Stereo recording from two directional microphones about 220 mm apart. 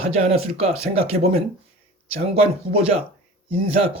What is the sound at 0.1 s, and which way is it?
A man's voice, 30° right (ahead or behind).